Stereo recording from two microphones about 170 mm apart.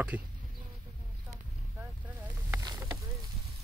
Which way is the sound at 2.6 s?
25° right (ahead or behind).